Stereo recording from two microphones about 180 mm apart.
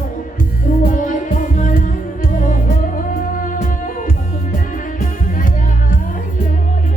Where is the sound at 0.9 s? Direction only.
45° left (ahead or behind).